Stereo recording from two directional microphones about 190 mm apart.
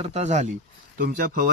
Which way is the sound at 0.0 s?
35° right (ahead or behind).